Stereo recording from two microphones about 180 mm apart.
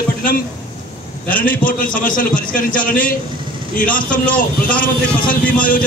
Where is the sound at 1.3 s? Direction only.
50° left (ahead or behind).